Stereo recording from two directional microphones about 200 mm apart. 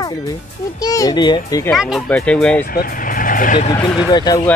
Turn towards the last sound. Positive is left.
turn(degrees=20)  # may be behind; listen again after turning